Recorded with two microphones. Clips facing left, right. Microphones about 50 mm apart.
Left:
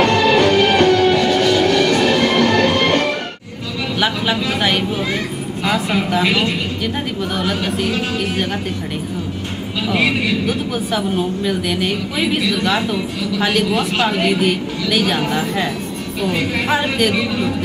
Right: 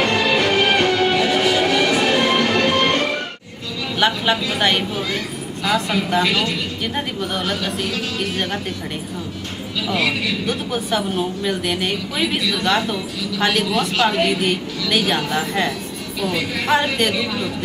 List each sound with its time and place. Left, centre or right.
0.0 s music: centre
4.0 s a woman's voice: centre
5.6 s a woman's voice: centre
6.2 s a woman's voice: left
6.8 s a woman's voice: centre
7.4 s a woman's voice: centre
10.4 s a woman's voice: centre
16.2 s a woman's voice: centre
16.6 s a woman's voice: centre